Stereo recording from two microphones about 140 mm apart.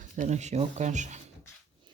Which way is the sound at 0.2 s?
55° right (ahead or behind).